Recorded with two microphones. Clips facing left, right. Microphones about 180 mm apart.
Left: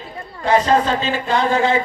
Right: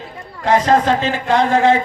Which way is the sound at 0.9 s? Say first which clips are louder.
Right 3 dB; 90° right.